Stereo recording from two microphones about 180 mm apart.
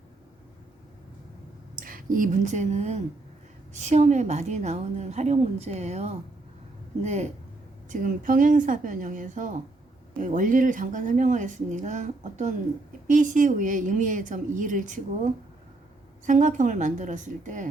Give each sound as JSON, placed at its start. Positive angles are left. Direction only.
{"t": 1.7, "sound": "a woman's voice", "side_deg": -50}